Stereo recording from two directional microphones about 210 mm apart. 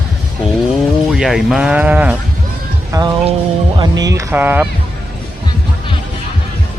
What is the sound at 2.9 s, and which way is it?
Music, 20° right (ahead or behind).